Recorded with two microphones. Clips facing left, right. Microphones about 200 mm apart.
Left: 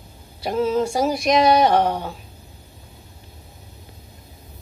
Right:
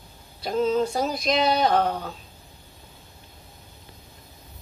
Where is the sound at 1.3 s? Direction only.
70° left (ahead or behind).